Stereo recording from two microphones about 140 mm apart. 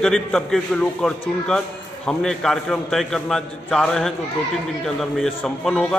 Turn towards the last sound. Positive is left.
turn(degrees=5)  # may be behind; listen again after turning